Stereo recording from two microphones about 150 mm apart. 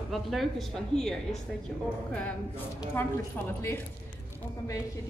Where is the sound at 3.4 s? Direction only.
10° left (ahead or behind).